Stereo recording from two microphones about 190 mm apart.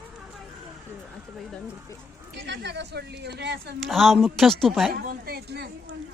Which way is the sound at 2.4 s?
65° right (ahead or behind).